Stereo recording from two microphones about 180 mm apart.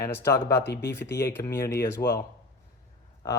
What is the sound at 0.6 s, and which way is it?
Speech, 70° left (ahead or behind).